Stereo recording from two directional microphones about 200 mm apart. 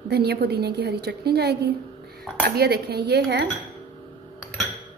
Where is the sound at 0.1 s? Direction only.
55° right (ahead or behind).